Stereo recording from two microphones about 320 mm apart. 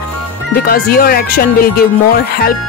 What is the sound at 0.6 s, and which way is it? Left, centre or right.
Speech, left.